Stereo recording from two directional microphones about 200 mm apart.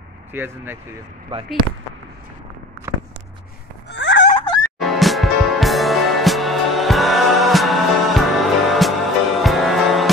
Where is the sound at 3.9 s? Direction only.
65° left (ahead or behind).